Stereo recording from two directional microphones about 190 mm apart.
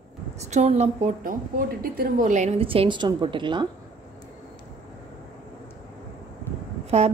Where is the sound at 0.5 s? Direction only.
35° right (ahead or behind).